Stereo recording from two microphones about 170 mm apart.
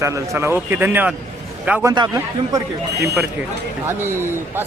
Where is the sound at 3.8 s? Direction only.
15° right (ahead or behind).